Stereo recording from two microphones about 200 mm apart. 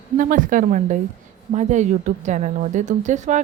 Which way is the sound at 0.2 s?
40° right (ahead or behind).